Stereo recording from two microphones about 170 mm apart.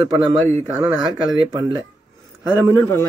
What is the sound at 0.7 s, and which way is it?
Speech, 10° right (ahead or behind).